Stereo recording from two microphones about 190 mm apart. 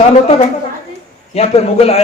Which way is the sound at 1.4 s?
35° left (ahead or behind).